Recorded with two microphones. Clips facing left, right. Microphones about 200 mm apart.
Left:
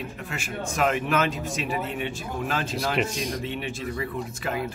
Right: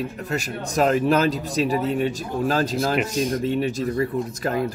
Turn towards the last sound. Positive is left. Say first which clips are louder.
# right 6 dB
turn(degrees=-40)  # may be behind; listen again after turning